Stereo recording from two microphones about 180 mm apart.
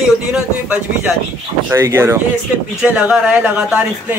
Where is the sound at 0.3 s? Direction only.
10° right (ahead or behind).